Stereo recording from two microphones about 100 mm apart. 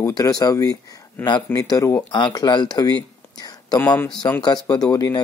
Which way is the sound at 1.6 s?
35° left (ahead or behind).